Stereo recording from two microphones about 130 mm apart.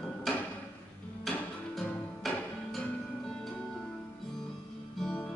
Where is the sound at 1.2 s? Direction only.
5° left (ahead or behind).